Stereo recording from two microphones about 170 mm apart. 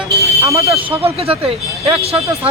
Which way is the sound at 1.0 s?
35° right (ahead or behind).